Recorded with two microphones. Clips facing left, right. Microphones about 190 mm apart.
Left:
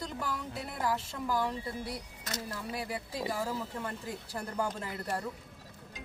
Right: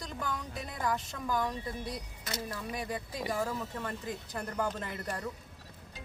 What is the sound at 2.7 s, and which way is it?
Speech, 5° left (ahead or behind).